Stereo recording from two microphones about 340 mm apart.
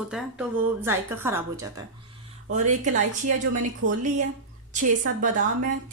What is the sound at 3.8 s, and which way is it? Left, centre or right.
Speech, right.